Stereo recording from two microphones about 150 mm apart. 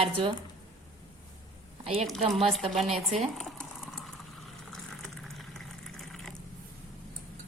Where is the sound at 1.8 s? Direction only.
40° right (ahead or behind).